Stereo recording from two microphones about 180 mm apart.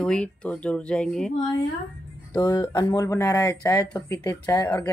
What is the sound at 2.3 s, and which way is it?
Speech, 25° left (ahead or behind).